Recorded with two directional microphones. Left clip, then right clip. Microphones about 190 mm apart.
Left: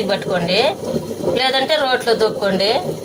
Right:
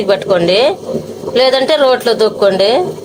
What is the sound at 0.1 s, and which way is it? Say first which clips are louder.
A woman's voice: right 10 dB; 55° right (ahead or behind).